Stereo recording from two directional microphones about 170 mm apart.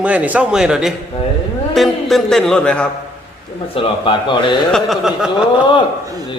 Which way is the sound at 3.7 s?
30° left (ahead or behind).